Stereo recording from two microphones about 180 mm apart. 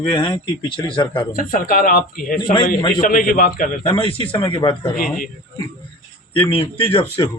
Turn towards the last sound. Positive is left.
turn(degrees=30)  # may be behind; listen again after turning